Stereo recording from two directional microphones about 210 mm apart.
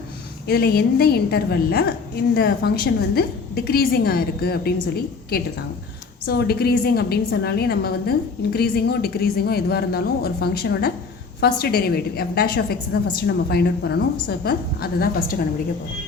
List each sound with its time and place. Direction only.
0.4 s a woman's voice: 50° left (ahead or behind)